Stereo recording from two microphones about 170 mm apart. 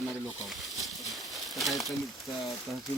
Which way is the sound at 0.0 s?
Centre (ahead or behind).